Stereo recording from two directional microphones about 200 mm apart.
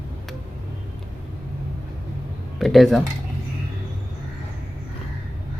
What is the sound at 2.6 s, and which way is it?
Speech, centre (ahead or behind).